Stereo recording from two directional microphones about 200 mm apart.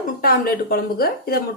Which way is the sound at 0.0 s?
50° left (ahead or behind).